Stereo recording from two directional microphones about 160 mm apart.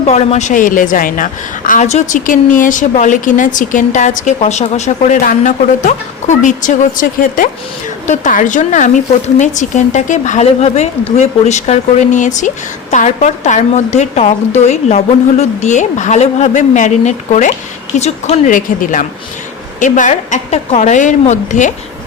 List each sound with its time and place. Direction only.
0.0 s a woman's voice: 40° left (ahead or behind)